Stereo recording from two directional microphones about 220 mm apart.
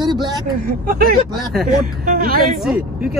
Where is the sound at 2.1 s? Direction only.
40° right (ahead or behind).